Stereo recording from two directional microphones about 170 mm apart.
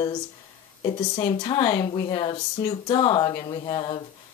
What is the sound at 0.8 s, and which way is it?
Speech, 30° left (ahead or behind).